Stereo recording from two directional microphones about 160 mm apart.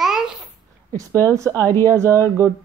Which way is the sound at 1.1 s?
10° left (ahead or behind).